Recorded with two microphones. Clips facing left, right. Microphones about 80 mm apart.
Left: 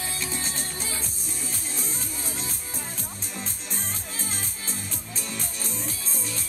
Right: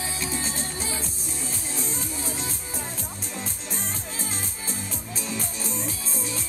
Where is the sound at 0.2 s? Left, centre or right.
Centre.